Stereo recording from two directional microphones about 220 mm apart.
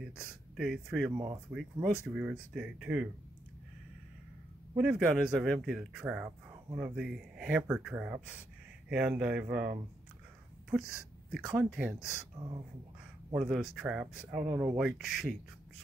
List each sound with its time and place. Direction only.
0.1 s speech: 5° right (ahead or behind)
1.1 s speech: 20° right (ahead or behind)
1.5 s speech: 5° right (ahead or behind)
4.7 s speech: 5° right (ahead or behind)
13.4 s speech: centre (ahead or behind)